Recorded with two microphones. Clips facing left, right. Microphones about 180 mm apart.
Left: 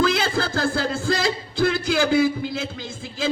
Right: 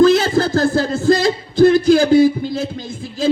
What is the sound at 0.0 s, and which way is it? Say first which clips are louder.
Music: right 9 dB; 40° right (ahead or behind).